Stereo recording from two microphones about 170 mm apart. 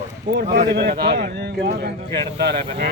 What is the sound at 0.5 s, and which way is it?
A man's voice, 90° right.